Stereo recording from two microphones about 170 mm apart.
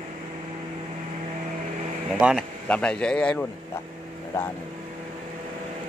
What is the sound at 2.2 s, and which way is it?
Speech, 5° right (ahead or behind).